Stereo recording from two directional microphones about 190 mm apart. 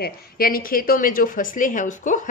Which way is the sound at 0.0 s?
50° left (ahead or behind).